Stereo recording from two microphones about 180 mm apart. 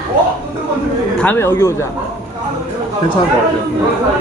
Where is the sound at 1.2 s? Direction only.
10° left (ahead or behind).